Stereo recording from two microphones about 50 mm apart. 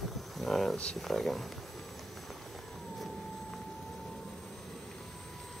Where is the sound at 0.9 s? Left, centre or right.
Centre.